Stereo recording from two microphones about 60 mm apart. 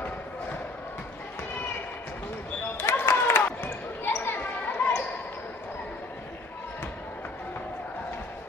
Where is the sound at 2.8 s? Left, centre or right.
Left.